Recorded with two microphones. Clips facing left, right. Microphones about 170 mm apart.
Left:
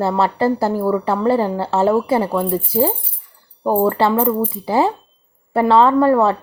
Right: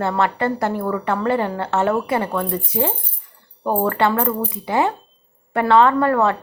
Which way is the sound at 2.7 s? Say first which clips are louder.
Left 5 dB; 35° left (ahead or behind).